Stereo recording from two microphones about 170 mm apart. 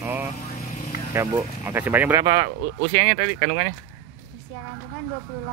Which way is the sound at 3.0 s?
40° right (ahead or behind).